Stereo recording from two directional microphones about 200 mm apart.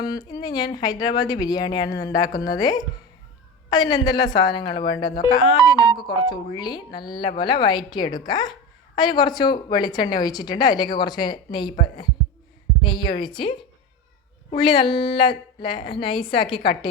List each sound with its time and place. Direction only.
0.1 s a woman's voice: 20° left (ahead or behind)
12.8 s a woman's voice: 25° left (ahead or behind)